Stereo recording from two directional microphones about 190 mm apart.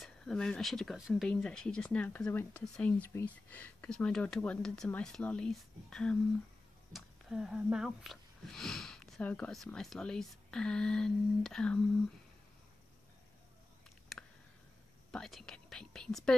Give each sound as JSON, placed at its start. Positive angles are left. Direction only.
{"t": 0.0, "sound": "speech", "side_deg": 0}
{"t": 14.1, "sound": "a sound", "side_deg": 0}
{"t": 15.0, "sound": "speech", "side_deg": 0}